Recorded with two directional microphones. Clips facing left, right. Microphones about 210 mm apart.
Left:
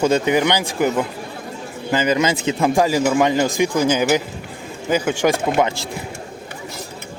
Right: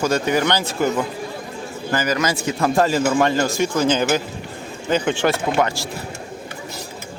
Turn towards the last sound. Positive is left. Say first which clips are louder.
# left 2 dB
turn(degrees=20)  # may be behind; listen again after turning